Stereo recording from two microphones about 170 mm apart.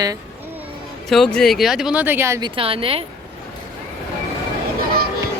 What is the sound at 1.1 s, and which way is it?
Speech, 5° left (ahead or behind).